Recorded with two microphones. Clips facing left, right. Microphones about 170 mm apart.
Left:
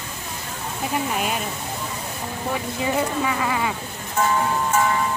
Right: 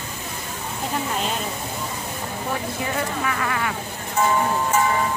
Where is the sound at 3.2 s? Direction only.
15° left (ahead or behind).